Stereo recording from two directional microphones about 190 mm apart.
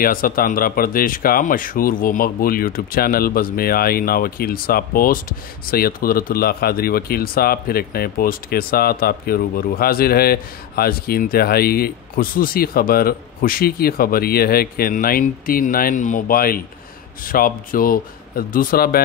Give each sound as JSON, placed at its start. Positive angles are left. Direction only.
{"t": 0.0, "sound": "speech", "side_deg": 50}